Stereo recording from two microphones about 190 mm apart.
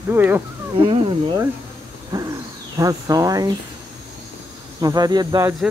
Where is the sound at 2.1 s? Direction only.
20° right (ahead or behind).